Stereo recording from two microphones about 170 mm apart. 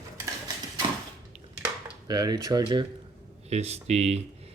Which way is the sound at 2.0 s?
25° right (ahead or behind).